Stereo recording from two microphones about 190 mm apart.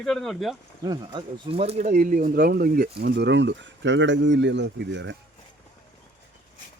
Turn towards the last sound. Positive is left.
turn(degrees=-70)  # may be behind; listen again after turning